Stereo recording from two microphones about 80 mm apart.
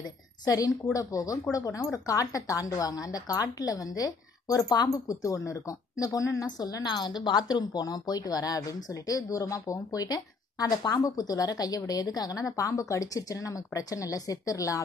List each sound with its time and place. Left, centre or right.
0.5 s a woman's voice: left
6.4 s a woman's voice: left